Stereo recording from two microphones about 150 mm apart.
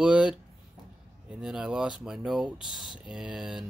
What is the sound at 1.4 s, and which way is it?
Speech, 5° right (ahead or behind).